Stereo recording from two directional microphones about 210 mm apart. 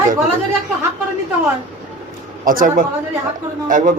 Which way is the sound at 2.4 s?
40° right (ahead or behind).